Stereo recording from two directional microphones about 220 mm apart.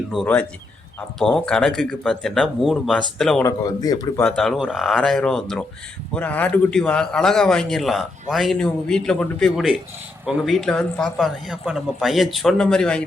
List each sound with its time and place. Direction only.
0.1 s a man's voice: 5° left (ahead or behind)
3.4 s speech: 15° left (ahead or behind)
4.2 s a man's voice: 5° left (ahead or behind)